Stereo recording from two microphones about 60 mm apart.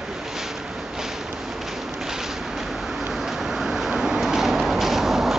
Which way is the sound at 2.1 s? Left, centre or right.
Centre.